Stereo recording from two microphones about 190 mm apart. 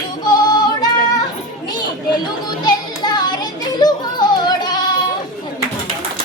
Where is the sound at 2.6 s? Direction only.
20° left (ahead or behind).